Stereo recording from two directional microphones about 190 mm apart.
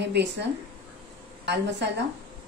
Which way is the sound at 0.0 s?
65° right (ahead or behind).